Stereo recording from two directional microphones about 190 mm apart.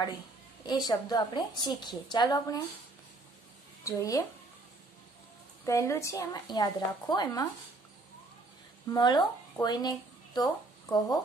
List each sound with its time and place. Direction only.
0.7 s a woman's voice: 20° left (ahead or behind)
3.8 s a woman's voice: 15° left (ahead or behind)
5.7 s a woman's voice: 15° left (ahead or behind)
8.9 s speech: 20° left (ahead or behind)